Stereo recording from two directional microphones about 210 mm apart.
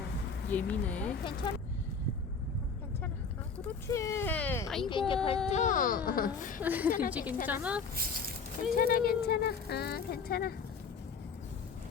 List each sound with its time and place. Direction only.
0.5 s speech: 5° left (ahead or behind)
3.7 s speech: 15° left (ahead or behind)
4.9 s speech: 25° left (ahead or behind)
5.5 s a woman's voice: 35° left (ahead or behind)
6.6 s a woman's voice: 10° right (ahead or behind)
7.9 s speech: 45° right (ahead or behind)
8.7 s speech: 45° left (ahead or behind)